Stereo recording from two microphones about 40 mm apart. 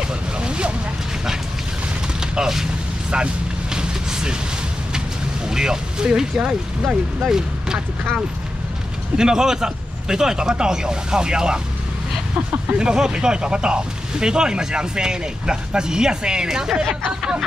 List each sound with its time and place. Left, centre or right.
0.4 s vehicle: right
2.1 s a sound: centre
3.7 s vehicle: centre
5.5 s speech: centre
7.2 s speech: centre
9.1 s speech: centre
12.7 s speech: centre